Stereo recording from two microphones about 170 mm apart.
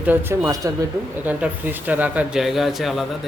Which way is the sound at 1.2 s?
10° right (ahead or behind).